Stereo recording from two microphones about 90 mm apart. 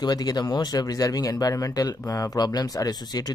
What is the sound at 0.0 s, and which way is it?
Speech, 50° left (ahead or behind).